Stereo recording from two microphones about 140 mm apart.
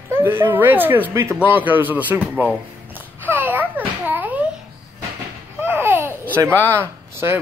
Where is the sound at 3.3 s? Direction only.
15° right (ahead or behind).